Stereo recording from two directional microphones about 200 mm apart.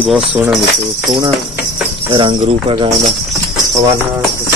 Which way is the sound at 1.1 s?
25° right (ahead or behind).